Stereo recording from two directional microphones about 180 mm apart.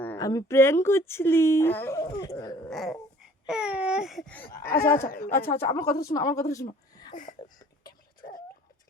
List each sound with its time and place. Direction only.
0.2 s speech: 20° left (ahead or behind)
2.6 s babbling: centre (ahead or behind)
4.6 s speech: 55° left (ahead or behind)
5.5 s speech: 15° left (ahead or behind)
6.9 s a sound: 20° left (ahead or behind)
7.2 s a sound: 45° left (ahead or behind)